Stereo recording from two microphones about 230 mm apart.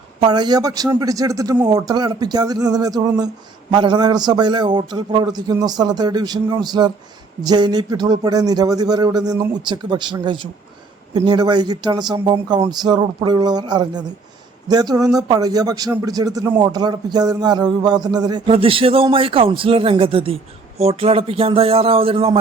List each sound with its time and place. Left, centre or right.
0.3 s a man's voice: centre